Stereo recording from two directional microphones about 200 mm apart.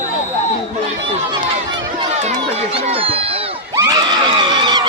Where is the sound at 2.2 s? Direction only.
35° right (ahead or behind).